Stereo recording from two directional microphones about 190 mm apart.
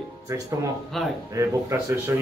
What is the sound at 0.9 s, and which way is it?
Speech, centre (ahead or behind).